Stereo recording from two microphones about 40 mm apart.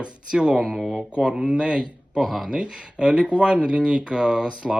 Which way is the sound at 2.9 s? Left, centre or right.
Right.